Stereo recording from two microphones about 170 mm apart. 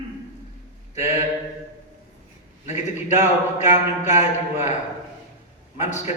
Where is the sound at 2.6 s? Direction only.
45° left (ahead or behind).